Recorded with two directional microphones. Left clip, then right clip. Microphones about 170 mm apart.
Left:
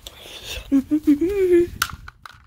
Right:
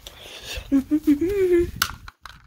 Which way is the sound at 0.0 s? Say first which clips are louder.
Left 2 dB; 30° left (ahead or behind).